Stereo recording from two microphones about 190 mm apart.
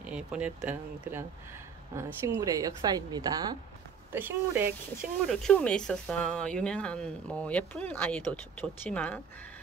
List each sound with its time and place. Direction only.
0.0 s speech: 5° right (ahead or behind)
2.2 s a woman's voice: 15° right (ahead or behind)
4.1 s speech: 10° right (ahead or behind)
5.2 s speech: 5° left (ahead or behind)